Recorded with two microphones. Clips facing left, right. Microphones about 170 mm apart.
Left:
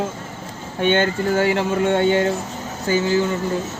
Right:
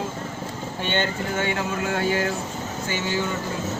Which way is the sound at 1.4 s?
30° left (ahead or behind).